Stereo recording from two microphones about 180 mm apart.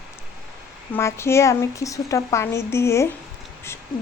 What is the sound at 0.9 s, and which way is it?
Speech, 15° left (ahead or behind).